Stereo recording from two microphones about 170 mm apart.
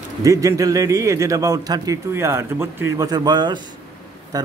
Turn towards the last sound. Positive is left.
turn(degrees=-20)  # may be behind; listen again after turning